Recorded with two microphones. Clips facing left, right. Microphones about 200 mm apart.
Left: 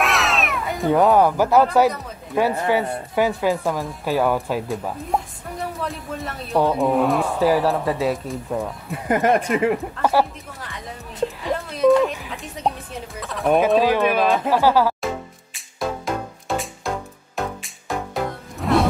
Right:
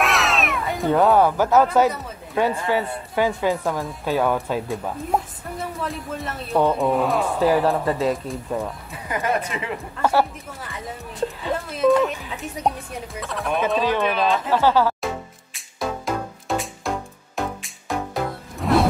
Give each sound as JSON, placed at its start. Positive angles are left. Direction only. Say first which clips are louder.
{"t": 0.0, "sound": "cat", "louder": "even", "side_deg": 0}
{"t": 1.1, "sound": "speech", "louder": "left 1 dB", "side_deg": 10}
{"t": 8.9, "sound": "speech", "louder": "left 6 dB", "side_deg": 50}
{"t": 11.4, "sound": "speech", "louder": "left 2 dB", "side_deg": -5}
{"t": 14.1, "sound": "speech", "louder": "left 3 dB", "side_deg": 50}
{"t": 14.5, "sound": "music", "louder": "right 1 dB", "side_deg": 10}